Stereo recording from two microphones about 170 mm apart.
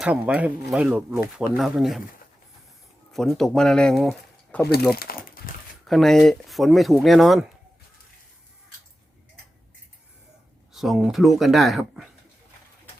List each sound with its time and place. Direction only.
0.0 s speech: 5° right (ahead or behind)
1.5 s speech: centre (ahead or behind)
3.1 s speech: centre (ahead or behind)
4.9 s speech: 60° left (ahead or behind)
5.8 s speech: centre (ahead or behind)
10.7 s speech: centre (ahead or behind)